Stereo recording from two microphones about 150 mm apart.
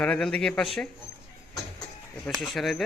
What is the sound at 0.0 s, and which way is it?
Speech, 5° left (ahead or behind).